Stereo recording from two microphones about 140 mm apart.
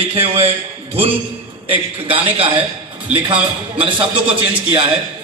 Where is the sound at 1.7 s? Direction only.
40° right (ahead or behind).